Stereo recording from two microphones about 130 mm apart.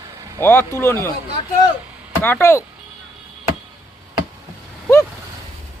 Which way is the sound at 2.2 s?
15° left (ahead or behind).